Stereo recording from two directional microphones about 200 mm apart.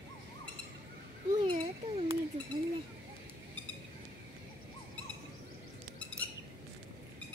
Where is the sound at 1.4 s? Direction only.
25° right (ahead or behind).